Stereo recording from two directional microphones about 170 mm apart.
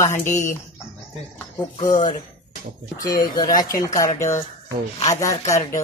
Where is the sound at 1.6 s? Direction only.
25° left (ahead or behind).